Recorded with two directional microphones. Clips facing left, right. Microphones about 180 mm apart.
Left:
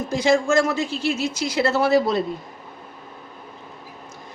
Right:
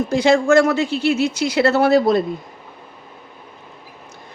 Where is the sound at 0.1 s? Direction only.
65° right (ahead or behind).